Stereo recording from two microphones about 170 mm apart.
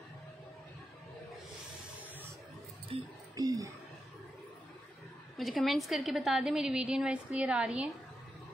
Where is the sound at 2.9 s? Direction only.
20° right (ahead or behind).